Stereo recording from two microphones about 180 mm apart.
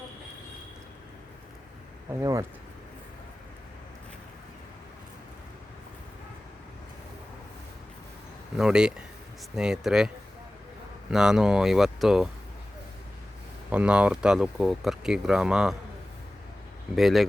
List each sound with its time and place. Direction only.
2.1 s speech: 20° right (ahead or behind)
8.5 s speech: 5° right (ahead or behind)
11.1 s speech: 5° right (ahead or behind)
13.7 s speech: 5° right (ahead or behind)
16.9 s speech: centre (ahead or behind)